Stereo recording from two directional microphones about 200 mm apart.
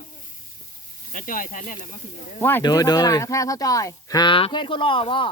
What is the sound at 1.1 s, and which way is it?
Speech, 40° left (ahead or behind).